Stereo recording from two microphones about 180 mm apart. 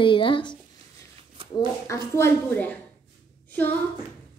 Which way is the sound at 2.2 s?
10° left (ahead or behind).